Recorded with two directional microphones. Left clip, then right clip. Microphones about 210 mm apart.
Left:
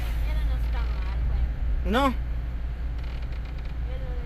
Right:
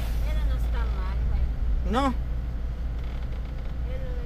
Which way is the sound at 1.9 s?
25° left (ahead or behind).